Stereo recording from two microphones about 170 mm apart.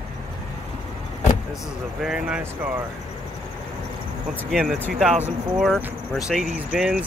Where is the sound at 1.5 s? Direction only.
Centre (ahead or behind).